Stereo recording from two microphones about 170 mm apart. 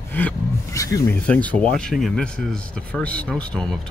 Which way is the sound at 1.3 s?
10° left (ahead or behind).